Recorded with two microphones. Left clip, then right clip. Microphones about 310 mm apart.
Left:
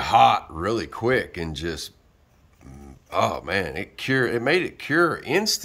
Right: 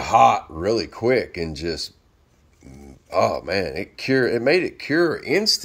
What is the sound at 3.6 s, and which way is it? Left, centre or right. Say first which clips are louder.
Speech: right 2 dB; left.